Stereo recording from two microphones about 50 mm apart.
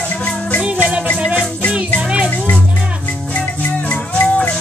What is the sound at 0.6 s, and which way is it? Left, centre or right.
Music, right.